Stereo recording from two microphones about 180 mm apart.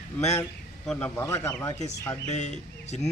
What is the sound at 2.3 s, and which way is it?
Speech, 40° left (ahead or behind).